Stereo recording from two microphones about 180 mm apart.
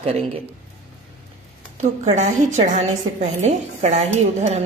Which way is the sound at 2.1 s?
40° right (ahead or behind).